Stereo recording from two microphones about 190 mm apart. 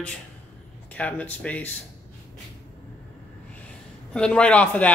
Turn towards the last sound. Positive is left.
turn(degrees=5)  # may be behind; listen again after turning